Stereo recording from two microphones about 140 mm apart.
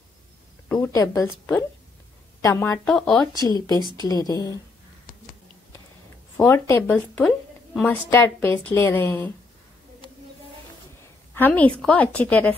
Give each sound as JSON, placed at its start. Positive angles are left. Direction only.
{"t": 0.7, "sound": "a woman's voice", "side_deg": 20}
{"t": 2.9, "sound": "speech", "side_deg": 5}
{"t": 3.4, "sound": "a woman's voice", "side_deg": 25}
{"t": 6.3, "sound": "a woman's voice", "side_deg": 15}
{"t": 10.0, "sound": "a sound", "side_deg": 35}
{"t": 11.3, "sound": "a woman's voice", "side_deg": 10}